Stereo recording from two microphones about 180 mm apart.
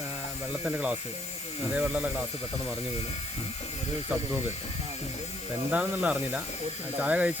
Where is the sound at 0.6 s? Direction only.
5° right (ahead or behind).